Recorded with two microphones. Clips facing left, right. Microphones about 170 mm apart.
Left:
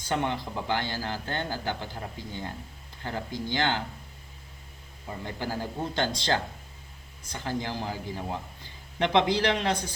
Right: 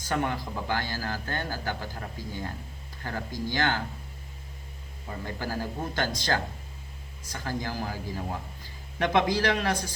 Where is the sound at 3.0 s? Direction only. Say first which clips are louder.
Even; 20° left (ahead or behind).